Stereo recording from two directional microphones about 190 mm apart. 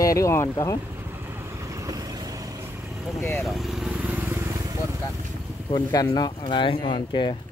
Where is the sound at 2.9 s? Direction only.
Centre (ahead or behind).